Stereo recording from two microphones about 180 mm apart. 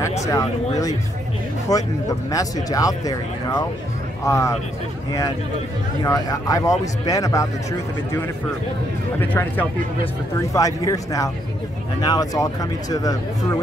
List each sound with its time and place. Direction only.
0.2 s speech: 20° left (ahead or behind)
6.0 s speech: 20° left (ahead or behind)
9.2 s speech: 10° left (ahead or behind)